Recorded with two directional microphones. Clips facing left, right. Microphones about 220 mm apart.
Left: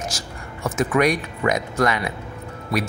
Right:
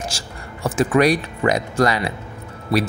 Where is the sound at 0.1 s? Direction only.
30° right (ahead or behind).